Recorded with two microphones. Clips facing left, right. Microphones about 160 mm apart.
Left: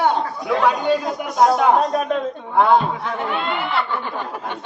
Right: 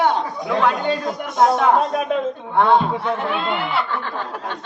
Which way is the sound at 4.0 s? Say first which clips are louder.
Even; 15° left (ahead or behind).